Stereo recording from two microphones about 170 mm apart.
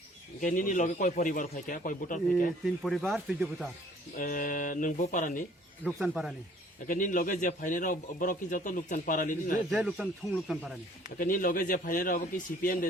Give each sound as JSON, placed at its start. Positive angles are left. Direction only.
{"t": 0.4, "sound": "a man's voice", "side_deg": 50}
{"t": 2.6, "sound": "speech", "side_deg": 0}
{"t": 4.2, "sound": "a man's voice", "side_deg": 55}
{"t": 5.8, "sound": "speech", "side_deg": 0}
{"t": 6.8, "sound": "a man's voice", "side_deg": 50}
{"t": 9.7, "sound": "speech", "side_deg": 0}
{"t": 11.2, "sound": "a man's voice", "side_deg": 55}